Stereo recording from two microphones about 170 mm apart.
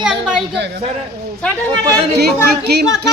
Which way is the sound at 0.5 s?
90° right.